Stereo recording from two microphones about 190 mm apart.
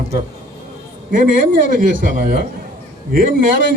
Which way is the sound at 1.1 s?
45° right (ahead or behind).